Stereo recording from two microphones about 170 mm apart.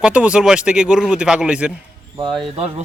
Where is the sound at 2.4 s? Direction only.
35° right (ahead or behind).